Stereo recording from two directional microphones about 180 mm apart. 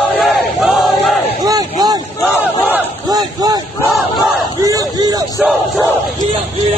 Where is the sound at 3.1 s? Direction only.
20° right (ahead or behind).